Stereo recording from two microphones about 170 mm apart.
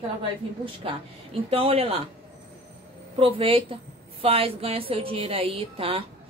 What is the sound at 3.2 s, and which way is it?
A woman's voice, 30° right (ahead or behind).